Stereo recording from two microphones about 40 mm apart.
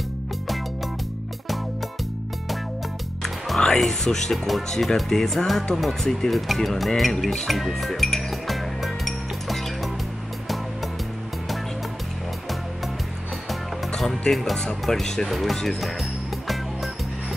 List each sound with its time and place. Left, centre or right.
3.2 s music: centre
3.6 s speech: centre
7.4 s music: centre
13.9 s music: centre
14.6 s speech: centre
15.2 s speech: centre
16.0 s music: centre